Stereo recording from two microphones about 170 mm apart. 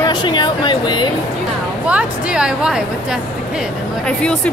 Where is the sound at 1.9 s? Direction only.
5° right (ahead or behind).